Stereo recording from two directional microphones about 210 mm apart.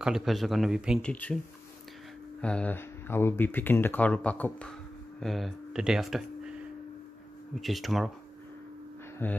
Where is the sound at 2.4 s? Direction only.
5° left (ahead or behind).